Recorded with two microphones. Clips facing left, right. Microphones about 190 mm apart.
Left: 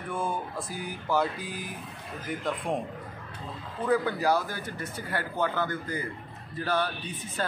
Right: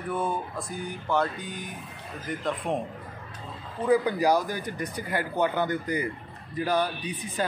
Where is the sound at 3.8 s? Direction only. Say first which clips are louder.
Right 3 dB; 15° right (ahead or behind).